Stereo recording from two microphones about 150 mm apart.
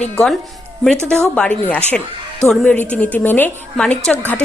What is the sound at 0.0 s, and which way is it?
A woman's voice, 5° left (ahead or behind).